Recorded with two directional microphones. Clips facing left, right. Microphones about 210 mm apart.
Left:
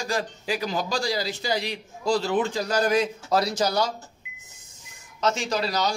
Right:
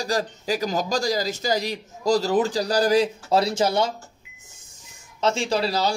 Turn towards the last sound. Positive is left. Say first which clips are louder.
# right 3 dB
turn(degrees=-30)  # may be behind; listen again after turning